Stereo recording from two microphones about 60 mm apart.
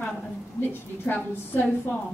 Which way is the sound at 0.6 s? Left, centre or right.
Left.